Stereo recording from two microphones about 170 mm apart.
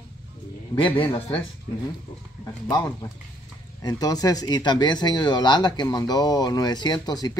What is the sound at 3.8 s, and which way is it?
Speech, 20° left (ahead or behind).